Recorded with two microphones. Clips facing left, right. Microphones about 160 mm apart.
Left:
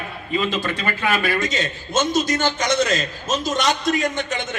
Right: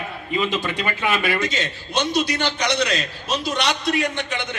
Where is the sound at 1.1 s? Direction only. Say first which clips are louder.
Left 1 dB; 45° left (ahead or behind).